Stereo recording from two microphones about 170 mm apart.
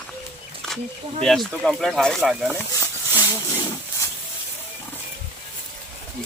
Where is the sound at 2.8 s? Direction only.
20° left (ahead or behind).